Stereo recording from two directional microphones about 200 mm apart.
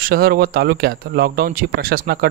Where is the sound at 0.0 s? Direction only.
50° right (ahead or behind).